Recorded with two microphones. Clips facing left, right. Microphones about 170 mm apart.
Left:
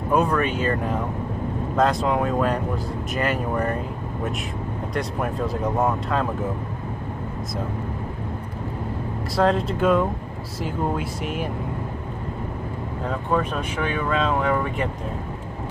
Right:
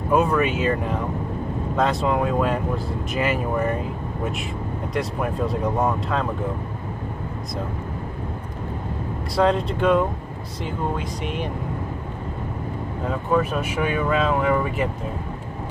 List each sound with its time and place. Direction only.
0.1 s speech: centre (ahead or behind)
4.9 s speech: centre (ahead or behind)
9.4 s speech: centre (ahead or behind)
13.3 s speech: 5° right (ahead or behind)